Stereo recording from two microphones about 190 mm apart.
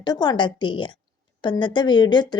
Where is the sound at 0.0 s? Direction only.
20° left (ahead or behind).